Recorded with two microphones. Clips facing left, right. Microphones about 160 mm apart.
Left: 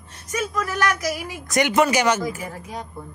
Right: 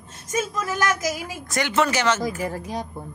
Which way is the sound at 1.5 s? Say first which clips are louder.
Left 4 dB; 15° left (ahead or behind).